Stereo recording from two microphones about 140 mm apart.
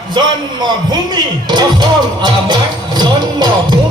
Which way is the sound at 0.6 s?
30° right (ahead or behind).